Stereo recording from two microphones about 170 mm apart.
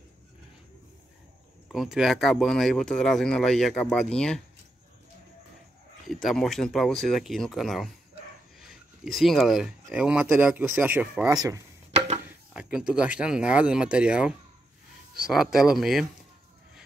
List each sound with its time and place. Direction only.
1.7 s speech: centre (ahead or behind)
6.0 s speech: centre (ahead or behind)
11.2 s speech: 20° right (ahead or behind)
12.3 s speech: 5° right (ahead or behind)